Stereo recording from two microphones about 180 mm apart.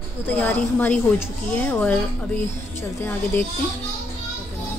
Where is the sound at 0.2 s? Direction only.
10° left (ahead or behind).